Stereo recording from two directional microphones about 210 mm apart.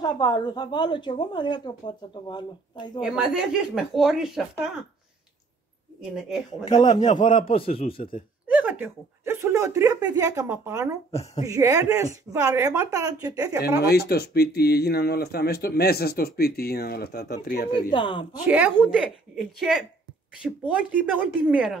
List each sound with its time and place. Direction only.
0.0 s a woman's voice: 20° left (ahead or behind)
3.0 s speech: 5° right (ahead or behind)
5.9 s speech: centre (ahead or behind)
6.6 s a woman's voice: 20° left (ahead or behind)
6.9 s a woman's voice: 35° left (ahead or behind)
8.5 s speech: 5° right (ahead or behind)
11.1 s a woman's voice: 30° left (ahead or behind)
11.4 s speech: 15° right (ahead or behind)
13.7 s speech: 50° left (ahead or behind)
17.6 s a woman's voice: 25° left (ahead or behind)
18.5 s speech: 5° right (ahead or behind)